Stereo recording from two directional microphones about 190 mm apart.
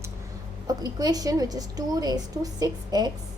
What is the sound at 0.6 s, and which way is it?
A woman's voice, 20° right (ahead or behind).